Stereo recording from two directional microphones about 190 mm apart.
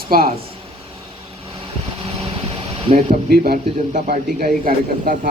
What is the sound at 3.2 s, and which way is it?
A man's voice, 55° right (ahead or behind).